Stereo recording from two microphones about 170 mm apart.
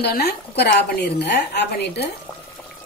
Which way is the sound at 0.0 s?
70° left (ahead or behind).